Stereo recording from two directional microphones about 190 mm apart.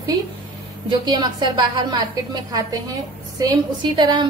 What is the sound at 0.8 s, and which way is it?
A woman's voice, 20° right (ahead or behind).